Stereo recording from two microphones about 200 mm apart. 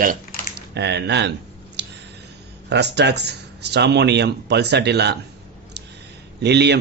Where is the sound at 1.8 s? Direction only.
60° right (ahead or behind).